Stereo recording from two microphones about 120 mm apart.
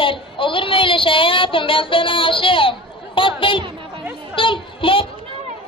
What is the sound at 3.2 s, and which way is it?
Chatter, 45° left (ahead or behind).